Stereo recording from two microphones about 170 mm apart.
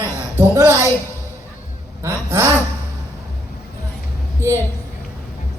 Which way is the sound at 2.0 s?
15° right (ahead or behind).